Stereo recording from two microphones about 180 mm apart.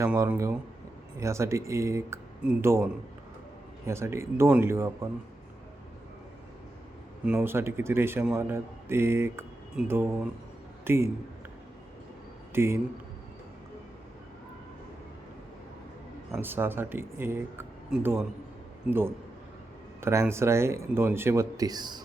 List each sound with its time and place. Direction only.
0.0 s a man's voice: 10° right (ahead or behind)
7.3 s a man's voice: 10° right (ahead or behind)
12.5 s a man's voice: 15° right (ahead or behind)
16.4 s a man's voice: 10° right (ahead or behind)